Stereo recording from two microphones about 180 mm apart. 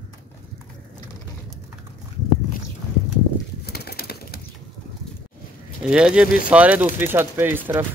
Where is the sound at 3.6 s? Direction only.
60° left (ahead or behind).